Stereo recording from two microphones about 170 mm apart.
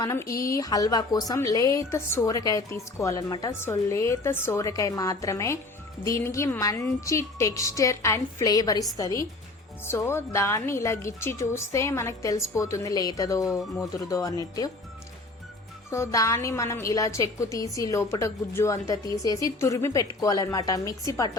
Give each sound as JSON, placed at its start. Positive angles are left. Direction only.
{"t": 0.0, "sound": "a woman's voice", "side_deg": 20}
{"t": 15.9, "sound": "a woman's voice", "side_deg": 15}